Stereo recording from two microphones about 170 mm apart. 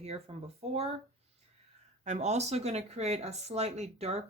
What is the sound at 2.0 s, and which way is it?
Speech, 40° right (ahead or behind).